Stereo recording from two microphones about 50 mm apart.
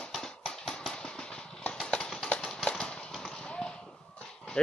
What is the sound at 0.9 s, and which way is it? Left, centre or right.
Vehicle, centre.